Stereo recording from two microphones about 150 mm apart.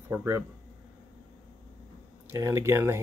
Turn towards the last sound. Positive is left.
turn(degrees=-15)  # may be behind; listen again after turning